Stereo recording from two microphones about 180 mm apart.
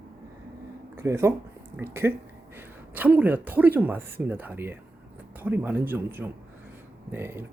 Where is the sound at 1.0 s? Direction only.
15° right (ahead or behind).